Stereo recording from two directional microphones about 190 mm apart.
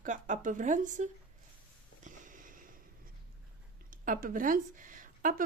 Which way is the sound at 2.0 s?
45° right (ahead or behind).